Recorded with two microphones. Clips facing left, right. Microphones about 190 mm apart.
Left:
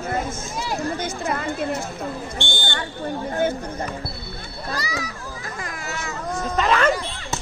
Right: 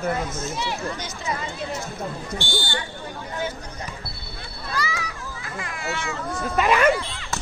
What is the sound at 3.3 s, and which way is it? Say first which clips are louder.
Speech: left 7 dB; 50° left (ahead or behind).